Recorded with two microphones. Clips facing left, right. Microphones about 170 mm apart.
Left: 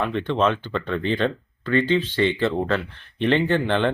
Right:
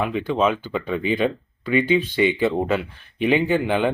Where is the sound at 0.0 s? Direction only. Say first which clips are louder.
Right 1 dB; 5° right (ahead or behind).